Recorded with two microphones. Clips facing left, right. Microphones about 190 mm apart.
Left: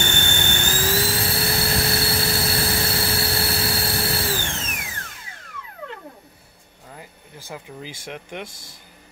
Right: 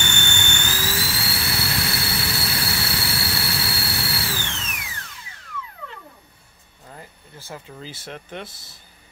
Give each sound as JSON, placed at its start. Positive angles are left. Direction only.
{"t": 0.0, "sound": "jet engine", "side_deg": 45}
{"t": 2.5, "sound": "a sound", "side_deg": 45}
{"t": 7.3, "sound": "speech", "side_deg": 15}